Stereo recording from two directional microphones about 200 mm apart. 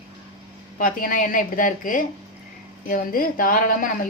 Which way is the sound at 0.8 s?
45° left (ahead or behind).